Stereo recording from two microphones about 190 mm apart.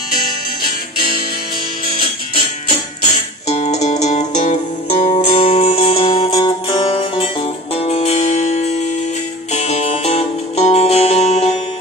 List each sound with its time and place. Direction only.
3.4 s music: 35° left (ahead or behind)